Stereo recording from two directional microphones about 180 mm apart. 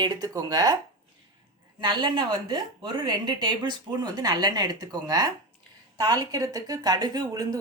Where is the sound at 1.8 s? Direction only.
25° right (ahead or behind).